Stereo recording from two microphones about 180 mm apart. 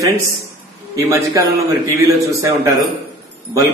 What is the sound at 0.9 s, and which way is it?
A man's voice, 15° right (ahead or behind).